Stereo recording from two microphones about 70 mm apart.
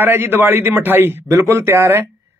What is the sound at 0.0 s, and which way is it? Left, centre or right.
A man's voice, right.